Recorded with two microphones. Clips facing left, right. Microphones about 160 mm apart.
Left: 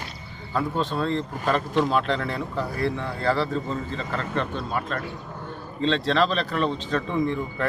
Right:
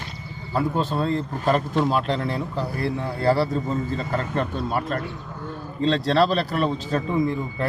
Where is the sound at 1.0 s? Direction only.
40° right (ahead or behind).